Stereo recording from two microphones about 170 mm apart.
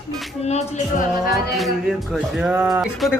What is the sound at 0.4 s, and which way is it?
Music, 40° left (ahead or behind).